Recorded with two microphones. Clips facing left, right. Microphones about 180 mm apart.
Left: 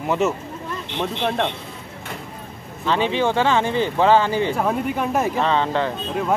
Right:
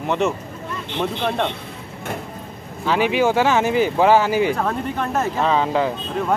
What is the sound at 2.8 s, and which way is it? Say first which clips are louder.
Speech: right 2 dB; 10° right (ahead or behind).